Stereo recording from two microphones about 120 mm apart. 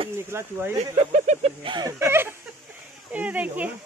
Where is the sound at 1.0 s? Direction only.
75° right (ahead or behind).